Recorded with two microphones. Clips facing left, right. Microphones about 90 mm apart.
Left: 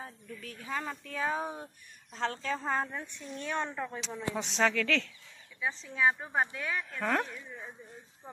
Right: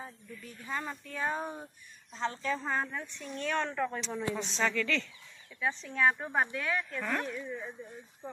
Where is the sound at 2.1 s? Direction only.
55° left (ahead or behind).